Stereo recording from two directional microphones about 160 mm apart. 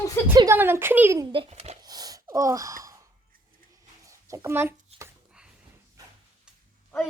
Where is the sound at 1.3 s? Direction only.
35° right (ahead or behind).